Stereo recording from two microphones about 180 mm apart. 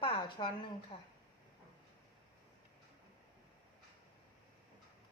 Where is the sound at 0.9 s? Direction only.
25° left (ahead or behind).